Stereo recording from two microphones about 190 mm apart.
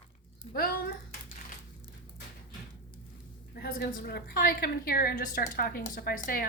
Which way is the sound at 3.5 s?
55° left (ahead or behind).